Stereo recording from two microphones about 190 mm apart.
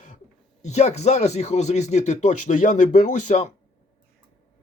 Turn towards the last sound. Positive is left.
turn(degrees=40)  # may be behind; listen again after turning